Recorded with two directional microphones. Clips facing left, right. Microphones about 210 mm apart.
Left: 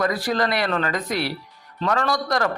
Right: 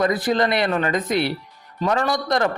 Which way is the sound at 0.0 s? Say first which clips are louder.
Right 3 dB; 20° right (ahead or behind).